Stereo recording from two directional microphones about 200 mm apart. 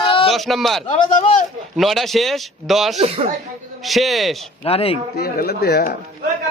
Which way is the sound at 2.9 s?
30° right (ahead or behind).